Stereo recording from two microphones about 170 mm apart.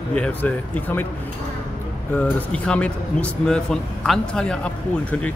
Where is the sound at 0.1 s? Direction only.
10° left (ahead or behind).